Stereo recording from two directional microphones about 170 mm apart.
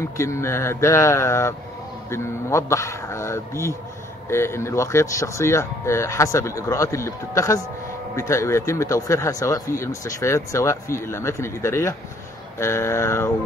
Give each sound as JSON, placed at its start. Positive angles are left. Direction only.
{"t": 0.2, "sound": "speech", "side_deg": 15}